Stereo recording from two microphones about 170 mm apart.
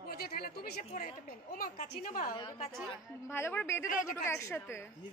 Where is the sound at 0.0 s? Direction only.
60° left (ahead or behind).